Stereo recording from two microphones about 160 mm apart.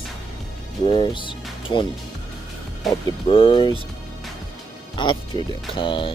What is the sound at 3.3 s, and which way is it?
Speech, 35° left (ahead or behind).